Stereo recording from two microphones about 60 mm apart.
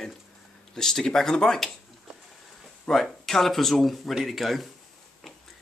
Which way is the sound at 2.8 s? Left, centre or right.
Centre.